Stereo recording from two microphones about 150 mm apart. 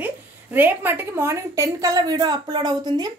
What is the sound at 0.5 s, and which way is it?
A woman's voice, 10° right (ahead or behind).